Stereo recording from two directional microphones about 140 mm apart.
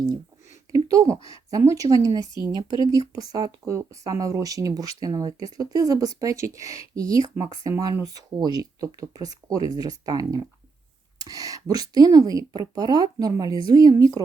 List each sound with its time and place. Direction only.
0.7 s speech: 25° right (ahead or behind)